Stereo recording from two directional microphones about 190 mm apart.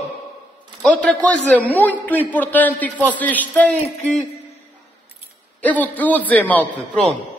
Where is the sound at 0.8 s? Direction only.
5° left (ahead or behind).